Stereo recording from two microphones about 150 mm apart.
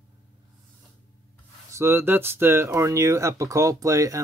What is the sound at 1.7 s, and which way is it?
Speech, 15° right (ahead or behind).